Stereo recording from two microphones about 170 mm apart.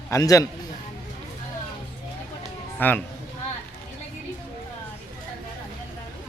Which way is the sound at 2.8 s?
10° left (ahead or behind).